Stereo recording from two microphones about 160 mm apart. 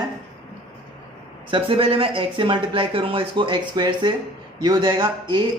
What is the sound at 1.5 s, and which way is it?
Speech, 35° right (ahead or behind).